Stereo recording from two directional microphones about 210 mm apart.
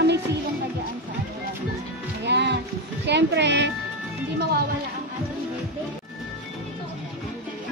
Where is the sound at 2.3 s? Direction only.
55° right (ahead or behind).